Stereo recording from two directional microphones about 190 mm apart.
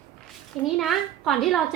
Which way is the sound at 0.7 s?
Centre (ahead or behind).